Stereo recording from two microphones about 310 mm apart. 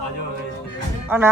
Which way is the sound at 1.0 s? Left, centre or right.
Centre.